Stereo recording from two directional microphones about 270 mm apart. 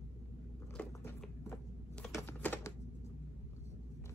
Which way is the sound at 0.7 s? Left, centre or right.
Centre.